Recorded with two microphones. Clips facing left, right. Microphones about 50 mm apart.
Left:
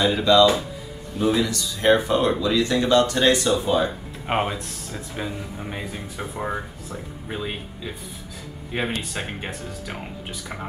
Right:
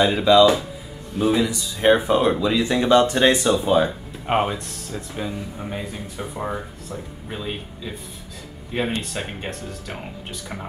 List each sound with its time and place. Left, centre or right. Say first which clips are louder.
0.1 s speech: right 2 dB; centre
4.3 s speech: right 3 dB; centre